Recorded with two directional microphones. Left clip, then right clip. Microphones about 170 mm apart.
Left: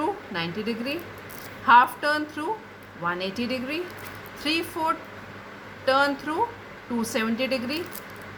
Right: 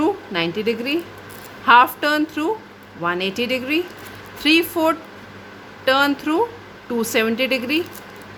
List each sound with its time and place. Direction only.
0.0 s a woman's voice: 70° right (ahead or behind)